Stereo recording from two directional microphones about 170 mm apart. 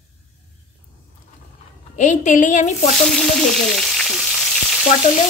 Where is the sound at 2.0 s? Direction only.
45° left (ahead or behind).